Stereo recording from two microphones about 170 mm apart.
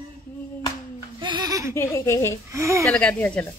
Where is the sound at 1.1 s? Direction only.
25° right (ahead or behind).